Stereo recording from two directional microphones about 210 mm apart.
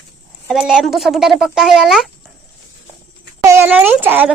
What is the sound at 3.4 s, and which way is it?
Speech, 10° right (ahead or behind).